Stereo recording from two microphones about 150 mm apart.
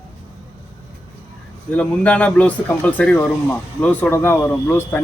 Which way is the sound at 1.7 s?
10° left (ahead or behind).